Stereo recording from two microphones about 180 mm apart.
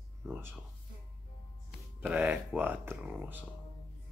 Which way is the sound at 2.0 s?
10° right (ahead or behind).